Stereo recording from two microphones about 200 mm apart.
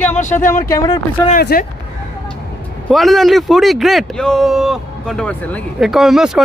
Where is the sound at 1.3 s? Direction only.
45° left (ahead or behind).